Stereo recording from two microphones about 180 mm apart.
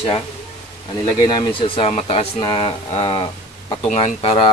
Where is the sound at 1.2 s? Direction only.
30° left (ahead or behind).